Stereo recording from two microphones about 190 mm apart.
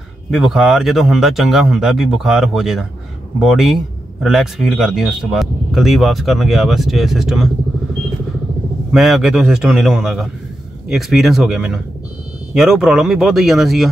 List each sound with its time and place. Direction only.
0.3 s speech: centre (ahead or behind)
8.9 s speech: centre (ahead or behind)